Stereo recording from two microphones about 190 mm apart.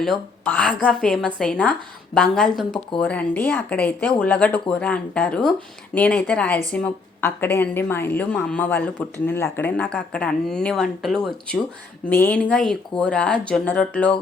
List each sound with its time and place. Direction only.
0.0 s a woman's voice: 5° left (ahead or behind)